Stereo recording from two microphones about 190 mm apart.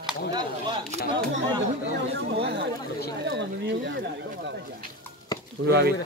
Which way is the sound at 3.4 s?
65° right (ahead or behind).